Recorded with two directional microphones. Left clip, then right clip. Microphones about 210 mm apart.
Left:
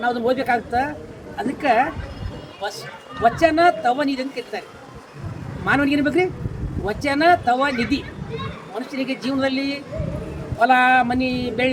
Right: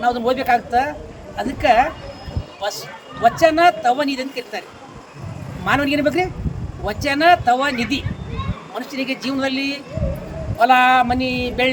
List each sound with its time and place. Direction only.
0.0 s a woman's voice: 15° right (ahead or behind)
5.6 s a woman's voice: 15° right (ahead or behind)